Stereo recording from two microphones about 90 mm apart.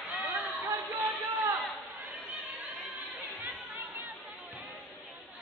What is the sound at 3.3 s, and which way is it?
Chatter, 20° right (ahead or behind).